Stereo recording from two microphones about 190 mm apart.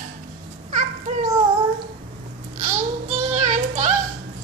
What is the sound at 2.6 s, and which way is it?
Child singing, 40° right (ahead or behind).